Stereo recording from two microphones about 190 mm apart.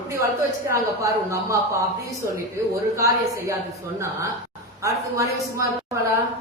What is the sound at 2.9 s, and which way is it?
Speech, 15° right (ahead or behind).